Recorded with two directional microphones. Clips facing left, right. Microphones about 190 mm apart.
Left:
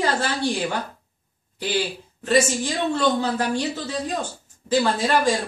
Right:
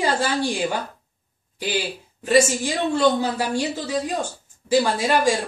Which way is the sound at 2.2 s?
10° right (ahead or behind).